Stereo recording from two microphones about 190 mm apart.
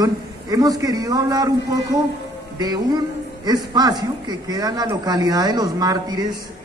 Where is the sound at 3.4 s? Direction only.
20° right (ahead or behind).